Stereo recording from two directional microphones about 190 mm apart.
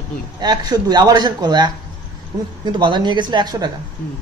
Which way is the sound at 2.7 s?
25° right (ahead or behind).